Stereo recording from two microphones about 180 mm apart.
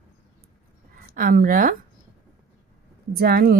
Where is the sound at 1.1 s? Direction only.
55° right (ahead or behind).